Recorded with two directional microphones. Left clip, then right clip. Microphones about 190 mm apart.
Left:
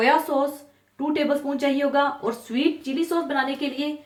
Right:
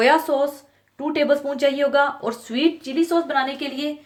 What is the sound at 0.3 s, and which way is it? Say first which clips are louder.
Speech: right 3 dB; 40° right (ahead or behind).